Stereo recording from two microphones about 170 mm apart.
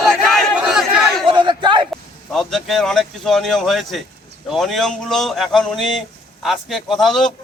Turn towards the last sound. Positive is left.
turn(degrees=0)  # may be behind; listen again after turning